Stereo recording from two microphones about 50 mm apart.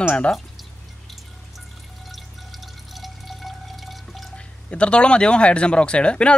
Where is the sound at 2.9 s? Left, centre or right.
Centre.